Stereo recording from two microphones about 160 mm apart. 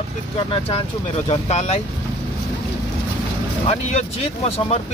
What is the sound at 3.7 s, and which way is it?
Speech, 45° left (ahead or behind).